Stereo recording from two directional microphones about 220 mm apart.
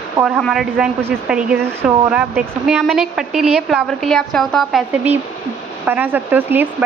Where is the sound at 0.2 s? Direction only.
Centre (ahead or behind).